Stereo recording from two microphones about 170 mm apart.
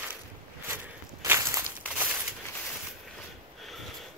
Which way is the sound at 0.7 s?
15° right (ahead or behind).